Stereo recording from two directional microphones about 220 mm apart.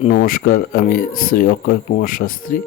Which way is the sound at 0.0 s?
40° left (ahead or behind).